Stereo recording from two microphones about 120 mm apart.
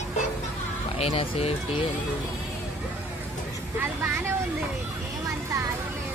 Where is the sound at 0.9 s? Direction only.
55° left (ahead or behind).